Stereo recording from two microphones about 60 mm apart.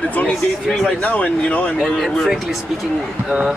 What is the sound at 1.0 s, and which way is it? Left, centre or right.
Speech, left.